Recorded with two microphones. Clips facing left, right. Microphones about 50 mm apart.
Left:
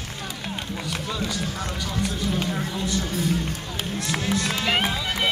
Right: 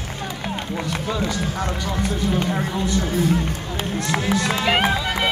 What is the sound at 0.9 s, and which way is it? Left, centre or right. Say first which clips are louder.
Speech: right 4 dB; right.